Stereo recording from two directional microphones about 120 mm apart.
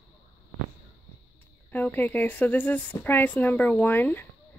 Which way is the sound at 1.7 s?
15° left (ahead or behind).